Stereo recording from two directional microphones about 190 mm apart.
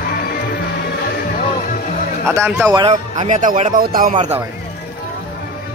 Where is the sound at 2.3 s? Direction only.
10° right (ahead or behind).